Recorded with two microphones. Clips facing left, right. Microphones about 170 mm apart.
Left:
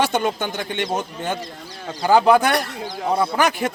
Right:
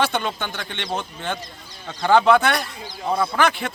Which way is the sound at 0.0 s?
45° left (ahead or behind).